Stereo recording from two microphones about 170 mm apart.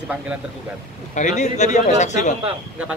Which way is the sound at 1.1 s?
45° left (ahead or behind).